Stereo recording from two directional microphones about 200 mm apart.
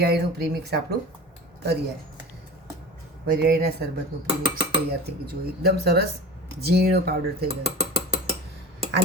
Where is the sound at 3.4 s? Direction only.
50° right (ahead or behind).